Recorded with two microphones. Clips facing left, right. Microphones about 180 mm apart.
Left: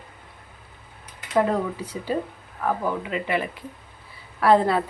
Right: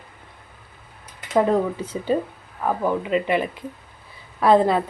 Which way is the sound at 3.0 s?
20° right (ahead or behind).